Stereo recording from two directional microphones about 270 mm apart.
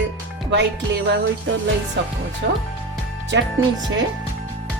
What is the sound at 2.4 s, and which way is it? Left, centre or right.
Speech, right.